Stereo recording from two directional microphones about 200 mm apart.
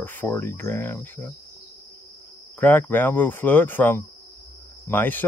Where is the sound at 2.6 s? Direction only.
10° left (ahead or behind).